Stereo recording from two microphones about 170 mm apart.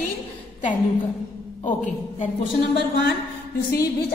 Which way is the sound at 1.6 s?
45° left (ahead or behind).